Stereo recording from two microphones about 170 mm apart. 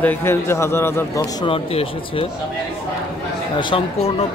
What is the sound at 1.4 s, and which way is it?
Speech, 35° left (ahead or behind).